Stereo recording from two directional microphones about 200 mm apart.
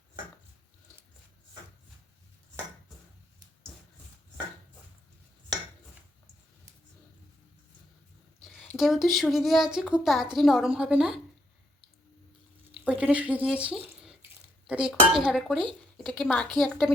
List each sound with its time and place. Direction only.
8.4 s speech: centre (ahead or behind)
12.7 s speech: 5° right (ahead or behind)